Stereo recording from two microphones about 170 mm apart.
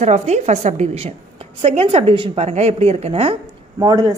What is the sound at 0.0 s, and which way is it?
A woman's voice, 40° right (ahead or behind).